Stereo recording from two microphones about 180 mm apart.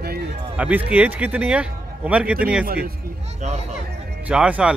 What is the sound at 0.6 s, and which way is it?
A man's voice, 10° right (ahead or behind).